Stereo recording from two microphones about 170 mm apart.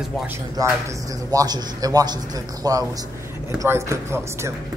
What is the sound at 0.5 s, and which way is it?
A man's voice, 20° right (ahead or behind).